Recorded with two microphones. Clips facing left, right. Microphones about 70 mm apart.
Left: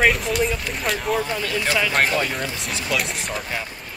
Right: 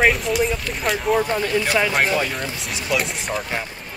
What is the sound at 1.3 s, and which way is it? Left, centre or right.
Speech, right.